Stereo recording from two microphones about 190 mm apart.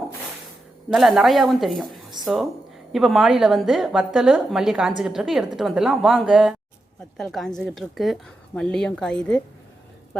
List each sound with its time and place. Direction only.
0.9 s a woman's voice: centre (ahead or behind)